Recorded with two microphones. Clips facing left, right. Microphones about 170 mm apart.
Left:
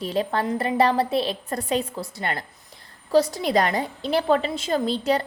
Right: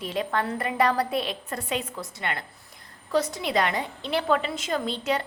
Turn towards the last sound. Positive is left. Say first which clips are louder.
# left 5 dB
turn(degrees=35)  # may be behind; listen again after turning